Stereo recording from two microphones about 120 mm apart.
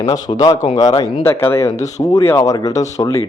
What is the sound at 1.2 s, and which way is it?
Speech, 20° left (ahead or behind).